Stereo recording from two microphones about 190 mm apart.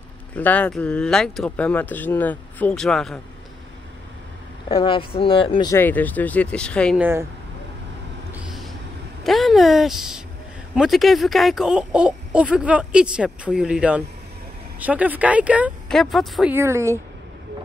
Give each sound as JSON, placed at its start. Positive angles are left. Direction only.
{"t": 0.4, "sound": "speech", "side_deg": 10}
{"t": 4.6, "sound": "speech", "side_deg": 25}
{"t": 5.8, "sound": "speech", "side_deg": 10}
{"t": 7.0, "sound": "speech", "side_deg": -10}
{"t": 8.3, "sound": "vehicle", "side_deg": -5}
{"t": 9.2, "sound": "speech", "side_deg": 0}
{"t": 16.5, "sound": "speech", "side_deg": -15}